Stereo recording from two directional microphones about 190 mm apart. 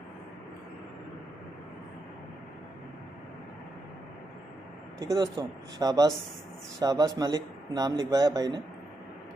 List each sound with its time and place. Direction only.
4.9 s a man's voice: 20° right (ahead or behind)